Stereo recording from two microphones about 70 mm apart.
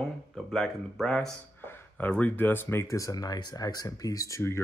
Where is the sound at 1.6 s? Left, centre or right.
Left.